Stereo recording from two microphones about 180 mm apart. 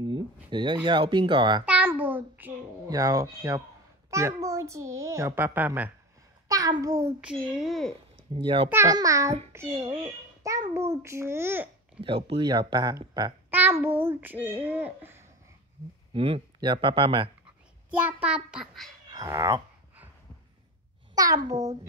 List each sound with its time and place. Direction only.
0.0 s a sound: 25° right (ahead or behind)
0.8 s speech: 25° right (ahead or behind)
1.7 s babbling: 10° right (ahead or behind)
4.1 s a child's voice: 15° right (ahead or behind)
6.5 s a child's voice: 20° right (ahead or behind)
7.2 s a child's voice: 5° right (ahead or behind)
8.3 s speech: 30° right (ahead or behind)
8.6 s a child's voice: 15° right (ahead or behind)
12.0 s speech: 30° right (ahead or behind)
13.5 s a child's voice: 10° right (ahead or behind)
16.1 s speech: 30° right (ahead or behind)
17.9 s a child's voice: 5° right (ahead or behind)
19.0 s dog: 20° right (ahead or behind)
21.1 s speech: 20° right (ahead or behind)